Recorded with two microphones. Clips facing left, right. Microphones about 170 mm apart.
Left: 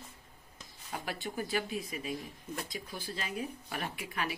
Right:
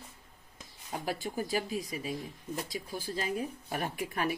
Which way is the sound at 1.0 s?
40° right (ahead or behind).